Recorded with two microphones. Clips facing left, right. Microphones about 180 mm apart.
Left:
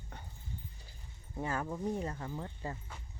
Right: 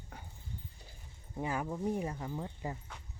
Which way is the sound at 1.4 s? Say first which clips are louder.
Right 1 dB; 10° right (ahead or behind).